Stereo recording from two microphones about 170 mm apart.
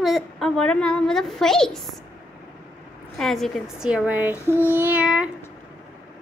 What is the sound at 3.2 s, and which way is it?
A woman's voice, centre (ahead or behind).